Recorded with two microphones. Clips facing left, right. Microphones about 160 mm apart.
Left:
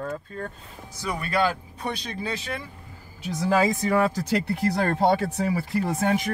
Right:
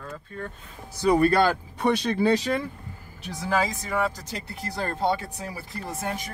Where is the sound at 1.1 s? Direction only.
35° right (ahead or behind).